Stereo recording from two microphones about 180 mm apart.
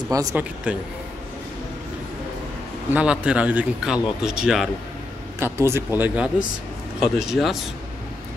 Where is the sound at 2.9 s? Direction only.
5° right (ahead or behind).